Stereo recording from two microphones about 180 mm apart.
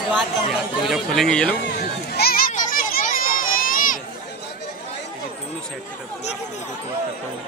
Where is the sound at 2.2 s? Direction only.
55° left (ahead or behind).